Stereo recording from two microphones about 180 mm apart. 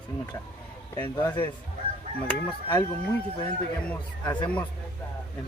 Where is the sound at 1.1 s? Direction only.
25° left (ahead or behind).